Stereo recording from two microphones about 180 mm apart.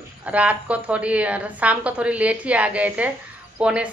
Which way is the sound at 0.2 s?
5° right (ahead or behind).